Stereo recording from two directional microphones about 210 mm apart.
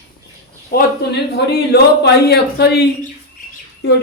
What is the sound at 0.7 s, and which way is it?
Speech, 50° left (ahead or behind).